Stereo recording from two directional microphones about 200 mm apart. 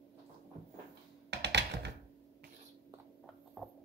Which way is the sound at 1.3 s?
60° right (ahead or behind).